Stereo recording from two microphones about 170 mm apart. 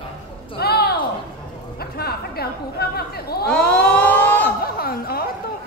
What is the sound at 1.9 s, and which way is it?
Chatter, 65° left (ahead or behind).